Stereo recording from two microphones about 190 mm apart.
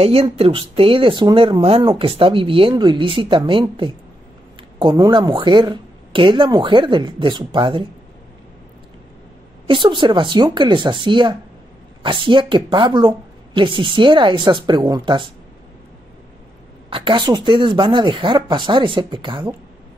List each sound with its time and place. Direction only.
0.0 s a woman's voice: 30° right (ahead or behind)
9.7 s a woman's voice: 25° right (ahead or behind)
16.9 s a woman's voice: 25° right (ahead or behind)